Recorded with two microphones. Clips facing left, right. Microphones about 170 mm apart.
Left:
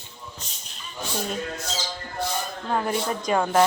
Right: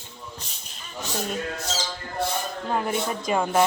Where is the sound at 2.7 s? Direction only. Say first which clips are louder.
Left 1 dB; 5° right (ahead or behind).